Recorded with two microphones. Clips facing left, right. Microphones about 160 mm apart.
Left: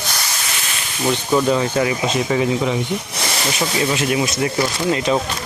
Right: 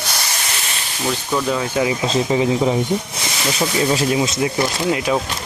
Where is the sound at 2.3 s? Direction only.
20° right (ahead or behind).